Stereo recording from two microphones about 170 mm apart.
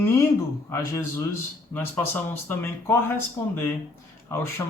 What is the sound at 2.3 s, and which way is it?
Speech, 15° left (ahead or behind).